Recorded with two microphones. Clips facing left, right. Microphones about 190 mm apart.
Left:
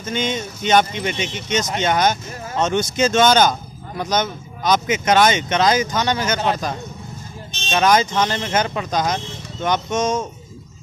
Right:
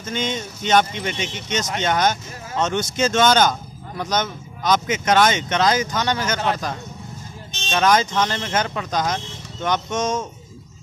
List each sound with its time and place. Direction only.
0.0 s speech: 15° left (ahead or behind)